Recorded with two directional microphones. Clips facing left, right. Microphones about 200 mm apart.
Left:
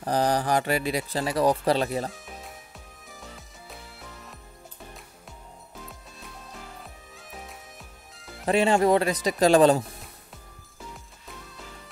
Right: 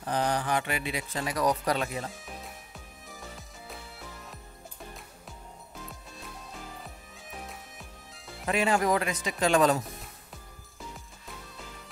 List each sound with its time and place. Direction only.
0.0 s speech: 35° left (ahead or behind)
2.2 s music: centre (ahead or behind)
6.8 s music: centre (ahead or behind)
8.5 s speech: 30° left (ahead or behind)